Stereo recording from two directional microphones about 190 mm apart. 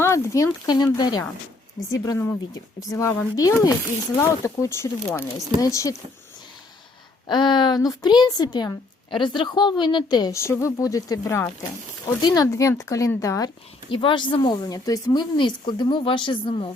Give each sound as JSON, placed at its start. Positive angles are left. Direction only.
{"t": 0.0, "sound": "a woman's voice", "side_deg": 15}
{"t": 7.3, "sound": "a woman's voice", "side_deg": 25}